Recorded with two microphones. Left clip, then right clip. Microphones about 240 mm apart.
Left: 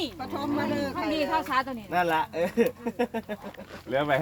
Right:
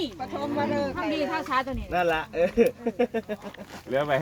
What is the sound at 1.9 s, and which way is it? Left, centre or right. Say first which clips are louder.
Speech: even; left.